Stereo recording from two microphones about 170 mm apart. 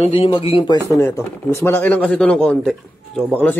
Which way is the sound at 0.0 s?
30° left (ahead or behind).